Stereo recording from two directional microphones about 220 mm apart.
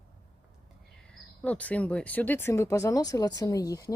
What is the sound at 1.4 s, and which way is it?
Speech, 5° left (ahead or behind).